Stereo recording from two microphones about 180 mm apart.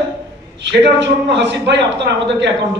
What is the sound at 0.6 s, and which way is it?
A man's voice, 75° right (ahead or behind).